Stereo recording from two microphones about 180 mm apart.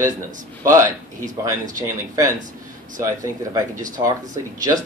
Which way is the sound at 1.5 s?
15° right (ahead or behind).